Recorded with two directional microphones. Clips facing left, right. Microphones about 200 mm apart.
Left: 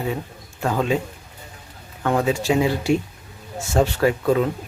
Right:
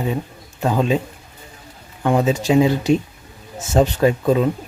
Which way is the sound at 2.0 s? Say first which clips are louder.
Right 3 dB; 20° right (ahead or behind).